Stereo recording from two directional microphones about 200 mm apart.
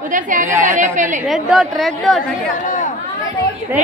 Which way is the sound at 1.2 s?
Centre (ahead or behind).